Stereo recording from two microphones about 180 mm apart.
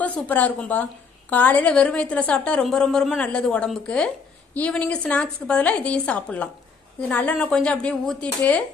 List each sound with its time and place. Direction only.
0.0 s a woman's voice: 10° left (ahead or behind)